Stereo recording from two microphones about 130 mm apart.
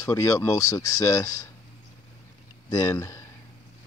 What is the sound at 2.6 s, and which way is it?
Speech, 25° left (ahead or behind).